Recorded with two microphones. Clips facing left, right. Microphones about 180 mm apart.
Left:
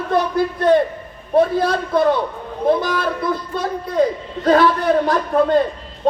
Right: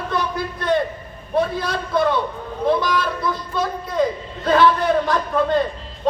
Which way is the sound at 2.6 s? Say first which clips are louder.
Left 2 dB; 50° left (ahead or behind).